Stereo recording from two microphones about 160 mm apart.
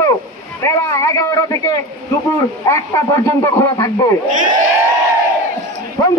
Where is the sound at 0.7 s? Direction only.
20° left (ahead or behind).